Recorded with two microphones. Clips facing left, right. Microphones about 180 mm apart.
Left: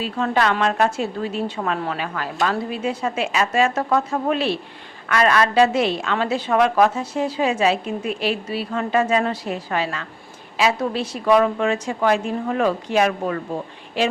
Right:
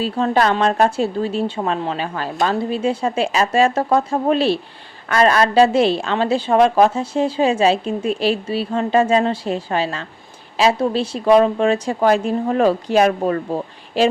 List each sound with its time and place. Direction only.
0.0 s a woman's voice: 35° right (ahead or behind)